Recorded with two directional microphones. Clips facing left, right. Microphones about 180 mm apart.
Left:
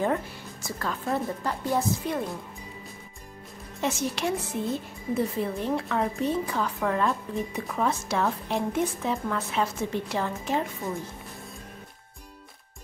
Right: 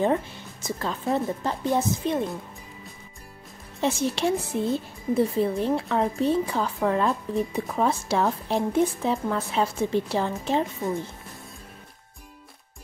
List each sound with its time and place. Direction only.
0.0 s a woman's voice: 20° right (ahead or behind)
3.8 s a woman's voice: 30° right (ahead or behind)